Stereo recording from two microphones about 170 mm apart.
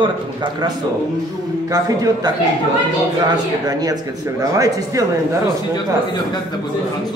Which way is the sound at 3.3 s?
20° right (ahead or behind).